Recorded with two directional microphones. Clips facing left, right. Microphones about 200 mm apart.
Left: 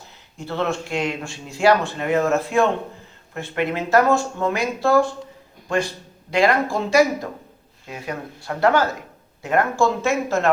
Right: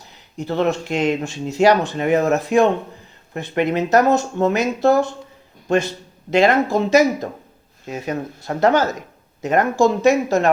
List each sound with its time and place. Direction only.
0.5 s a man's voice: 20° right (ahead or behind)